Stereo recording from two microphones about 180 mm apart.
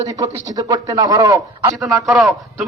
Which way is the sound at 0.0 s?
20° right (ahead or behind).